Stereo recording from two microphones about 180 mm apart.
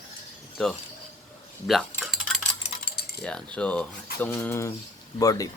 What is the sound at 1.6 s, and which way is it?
Cutlery, centre (ahead or behind).